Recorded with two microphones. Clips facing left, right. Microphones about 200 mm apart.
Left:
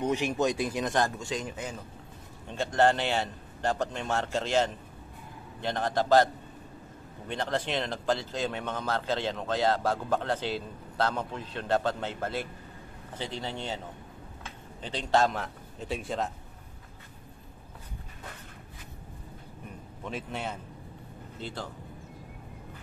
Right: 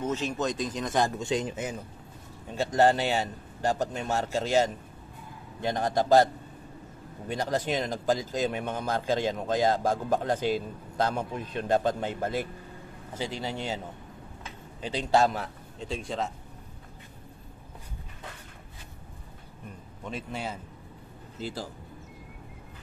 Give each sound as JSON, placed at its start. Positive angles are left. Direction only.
{"t": 0.0, "sound": "speech", "side_deg": 15}
{"t": 0.9, "sound": "a man's voice", "side_deg": -15}
{"t": 2.4, "sound": "a man's voice", "side_deg": -5}
{"t": 14.8, "sound": "a man's voice", "side_deg": -10}
{"t": 15.8, "sound": "a man's voice", "side_deg": 5}
{"t": 20.1, "sound": "a man's voice", "side_deg": 0}